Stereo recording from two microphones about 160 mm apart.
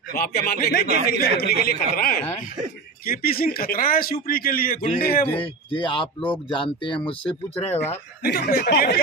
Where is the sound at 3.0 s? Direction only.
65° left (ahead or behind).